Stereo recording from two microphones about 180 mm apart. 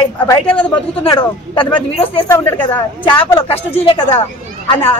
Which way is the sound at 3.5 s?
35° left (ahead or behind).